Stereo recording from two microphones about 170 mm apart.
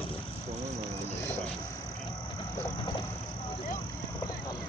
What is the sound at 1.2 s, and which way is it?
Frog, 15° left (ahead or behind).